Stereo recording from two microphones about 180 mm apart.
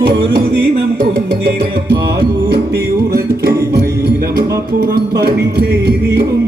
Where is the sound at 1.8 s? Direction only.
60° right (ahead or behind).